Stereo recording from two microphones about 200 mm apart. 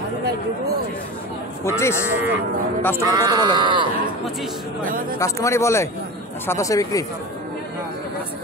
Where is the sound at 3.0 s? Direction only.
15° right (ahead or behind).